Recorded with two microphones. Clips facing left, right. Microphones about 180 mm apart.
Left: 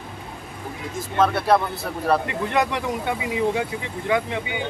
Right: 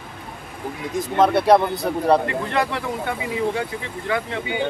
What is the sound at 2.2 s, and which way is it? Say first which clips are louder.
Speech: even; 20° left (ahead or behind).